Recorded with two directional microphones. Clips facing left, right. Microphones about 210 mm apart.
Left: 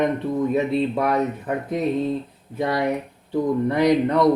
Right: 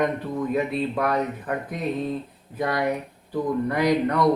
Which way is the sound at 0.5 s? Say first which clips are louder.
Left 3 dB; 25° left (ahead or behind).